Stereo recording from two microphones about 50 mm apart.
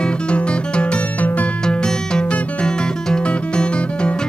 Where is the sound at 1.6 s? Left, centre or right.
Centre.